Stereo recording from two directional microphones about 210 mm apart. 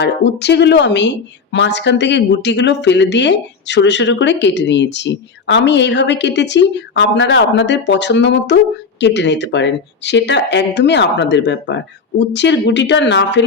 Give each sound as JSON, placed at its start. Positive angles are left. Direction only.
{"t": 0.0, "sound": "a woman's voice", "side_deg": 55}